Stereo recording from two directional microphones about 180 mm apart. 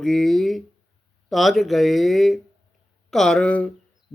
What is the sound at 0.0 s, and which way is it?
Speech, centre (ahead or behind).